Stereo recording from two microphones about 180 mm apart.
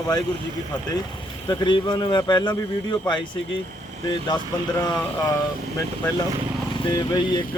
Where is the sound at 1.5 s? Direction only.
25° left (ahead or behind).